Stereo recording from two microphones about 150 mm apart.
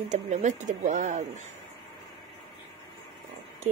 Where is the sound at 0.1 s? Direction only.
55° right (ahead or behind).